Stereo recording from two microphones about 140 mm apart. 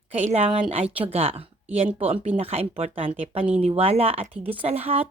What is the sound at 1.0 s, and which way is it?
A woman's voice, 45° right (ahead or behind).